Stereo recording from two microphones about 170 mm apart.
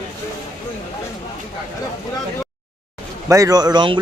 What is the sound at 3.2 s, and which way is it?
Speech, 20° right (ahead or behind).